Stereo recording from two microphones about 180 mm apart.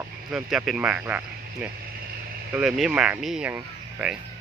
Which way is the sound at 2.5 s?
5° right (ahead or behind).